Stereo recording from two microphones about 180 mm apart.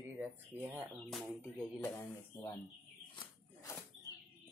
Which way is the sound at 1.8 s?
20° left (ahead or behind).